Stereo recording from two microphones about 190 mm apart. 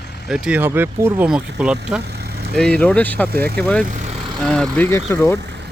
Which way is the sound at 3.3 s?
55° right (ahead or behind).